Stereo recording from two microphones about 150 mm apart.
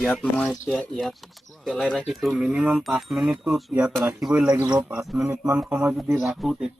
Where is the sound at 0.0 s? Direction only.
5° left (ahead or behind).